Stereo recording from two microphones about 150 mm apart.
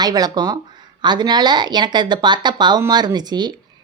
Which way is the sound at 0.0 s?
25° right (ahead or behind).